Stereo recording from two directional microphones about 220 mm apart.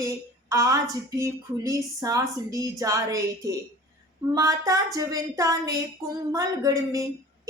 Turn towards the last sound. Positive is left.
turn(degrees=-15)  # may be behind; listen again after turning